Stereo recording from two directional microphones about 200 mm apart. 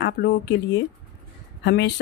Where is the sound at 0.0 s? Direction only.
55° left (ahead or behind).